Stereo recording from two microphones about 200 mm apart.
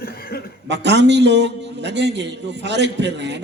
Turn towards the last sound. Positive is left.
turn(degrees=-60)  # may be behind; listen again after turning